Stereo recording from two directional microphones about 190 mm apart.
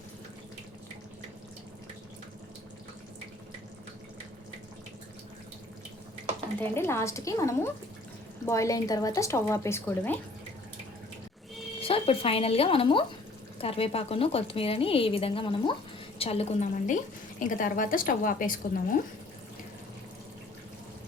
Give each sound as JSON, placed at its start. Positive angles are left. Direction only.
{"t": 6.6, "sound": "a woman's voice", "side_deg": 15}
{"t": 11.8, "sound": "a woman's voice", "side_deg": 30}